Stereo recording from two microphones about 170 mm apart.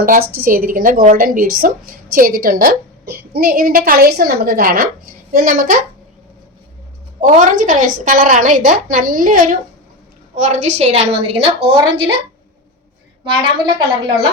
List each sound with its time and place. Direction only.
0.0 s a woman's voice: 55° right (ahead or behind)
7.2 s a woman's voice: 50° right (ahead or behind); by 11.7 s 35° right (ahead or behind)
13.4 s a woman's voice: 30° right (ahead or behind)